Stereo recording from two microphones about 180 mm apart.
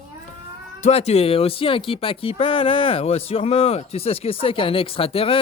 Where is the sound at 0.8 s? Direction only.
40° left (ahead or behind).